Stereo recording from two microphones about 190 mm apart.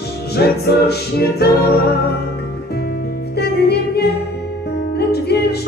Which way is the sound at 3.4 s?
60° left (ahead or behind).